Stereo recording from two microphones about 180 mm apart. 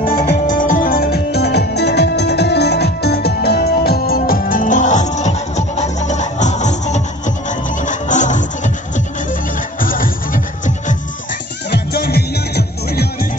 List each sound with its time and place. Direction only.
0.1 s music: 55° left (ahead or behind)
11.7 s music: 60° left (ahead or behind)